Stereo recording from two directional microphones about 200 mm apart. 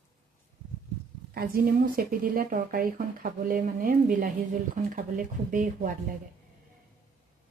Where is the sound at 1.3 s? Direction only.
45° right (ahead or behind).